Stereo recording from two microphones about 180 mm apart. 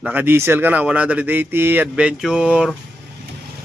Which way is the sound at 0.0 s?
10° right (ahead or behind).